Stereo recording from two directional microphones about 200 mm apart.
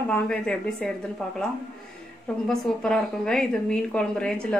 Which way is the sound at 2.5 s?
Centre (ahead or behind).